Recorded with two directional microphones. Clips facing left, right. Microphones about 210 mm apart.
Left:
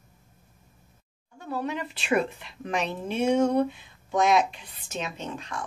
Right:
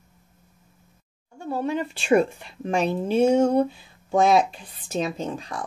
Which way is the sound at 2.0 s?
45° right (ahead or behind).